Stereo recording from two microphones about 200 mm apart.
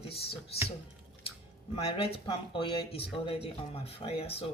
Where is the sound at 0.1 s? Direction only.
30° left (ahead or behind).